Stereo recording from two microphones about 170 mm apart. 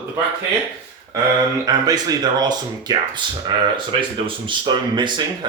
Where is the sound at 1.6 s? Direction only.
20° right (ahead or behind).